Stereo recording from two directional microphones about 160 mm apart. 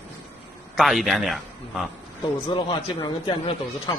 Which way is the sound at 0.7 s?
Centre (ahead or behind).